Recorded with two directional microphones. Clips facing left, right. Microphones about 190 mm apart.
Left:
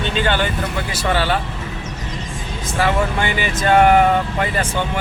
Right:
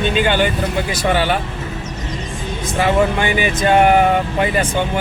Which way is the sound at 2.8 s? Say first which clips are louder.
Right 3 dB; 15° right (ahead or behind).